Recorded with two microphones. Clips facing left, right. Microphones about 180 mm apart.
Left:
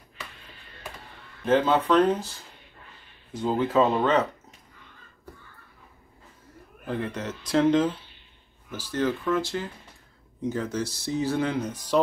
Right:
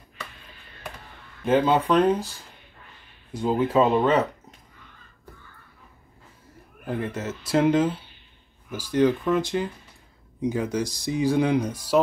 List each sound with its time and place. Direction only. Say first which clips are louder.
1.4 s speech: right 1 dB; 10° right (ahead or behind)
3.3 s speech: right 2 dB; 10° right (ahead or behind)
6.9 s speech: right 1 dB; 5° right (ahead or behind)